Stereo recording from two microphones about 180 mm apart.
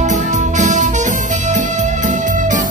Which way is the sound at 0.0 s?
40° right (ahead or behind).